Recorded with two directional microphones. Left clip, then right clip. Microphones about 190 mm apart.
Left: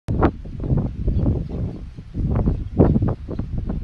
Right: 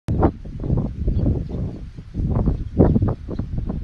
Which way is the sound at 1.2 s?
10° right (ahead or behind).